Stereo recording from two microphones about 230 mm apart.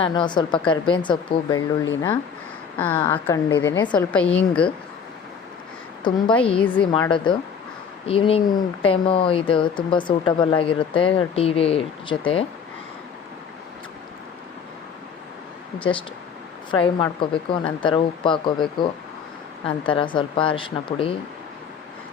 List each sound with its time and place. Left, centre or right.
0.0 s speech: centre
2.7 s a woman's voice: centre
6.0 s speech: centre
16.7 s speech: left